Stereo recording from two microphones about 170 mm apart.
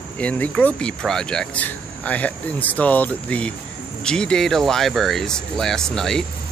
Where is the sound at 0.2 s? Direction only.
10° left (ahead or behind).